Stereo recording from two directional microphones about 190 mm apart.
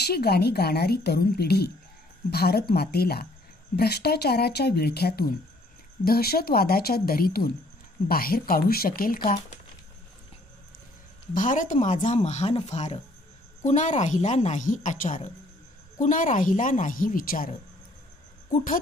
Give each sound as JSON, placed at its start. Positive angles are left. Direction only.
{"t": 0.0, "sound": "speech", "side_deg": 55}
{"t": 9.2, "sound": "speech", "side_deg": 35}
{"t": 11.3, "sound": "speech", "side_deg": 45}